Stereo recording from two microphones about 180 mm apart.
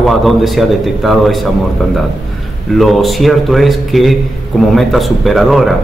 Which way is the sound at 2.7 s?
Centre (ahead or behind).